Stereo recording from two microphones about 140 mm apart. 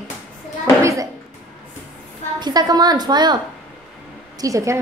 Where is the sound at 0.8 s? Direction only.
25° right (ahead or behind).